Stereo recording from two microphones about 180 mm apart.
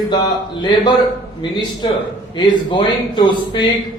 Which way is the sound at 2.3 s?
25° left (ahead or behind).